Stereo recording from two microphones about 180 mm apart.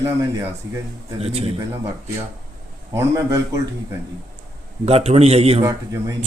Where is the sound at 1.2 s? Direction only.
35° right (ahead or behind).